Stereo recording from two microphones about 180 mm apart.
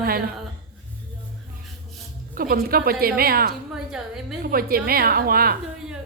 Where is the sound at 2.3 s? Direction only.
55° right (ahead or behind).